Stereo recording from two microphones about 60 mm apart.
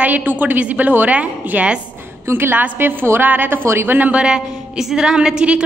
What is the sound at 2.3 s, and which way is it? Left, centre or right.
A woman's voice, right.